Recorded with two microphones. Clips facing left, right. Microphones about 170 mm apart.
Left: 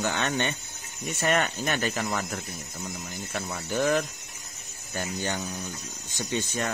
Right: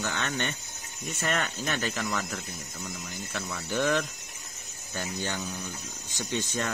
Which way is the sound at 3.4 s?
25° left (ahead or behind).